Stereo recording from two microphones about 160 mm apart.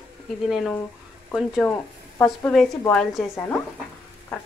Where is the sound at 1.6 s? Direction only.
15° left (ahead or behind).